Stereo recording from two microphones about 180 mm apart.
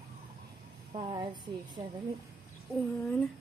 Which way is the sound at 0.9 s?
25° right (ahead or behind).